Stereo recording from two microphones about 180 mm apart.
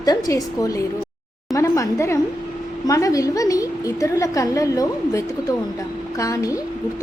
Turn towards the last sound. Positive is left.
turn(degrees=20)  # may be behind; listen again after turning